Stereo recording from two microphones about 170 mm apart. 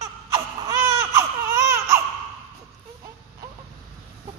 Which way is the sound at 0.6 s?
20° right (ahead or behind).